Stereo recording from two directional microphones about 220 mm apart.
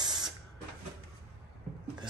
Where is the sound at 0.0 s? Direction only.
20° right (ahead or behind).